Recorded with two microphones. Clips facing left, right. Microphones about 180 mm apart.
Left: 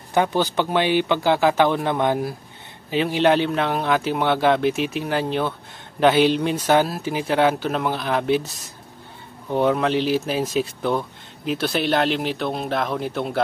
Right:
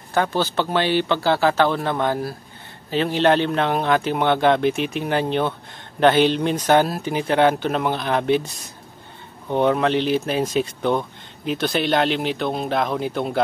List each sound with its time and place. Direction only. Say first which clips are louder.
0.1 s speech: left 1 dB; 15° left (ahead or behind)